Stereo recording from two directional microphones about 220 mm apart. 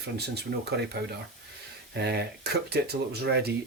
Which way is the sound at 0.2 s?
50° right (ahead or behind).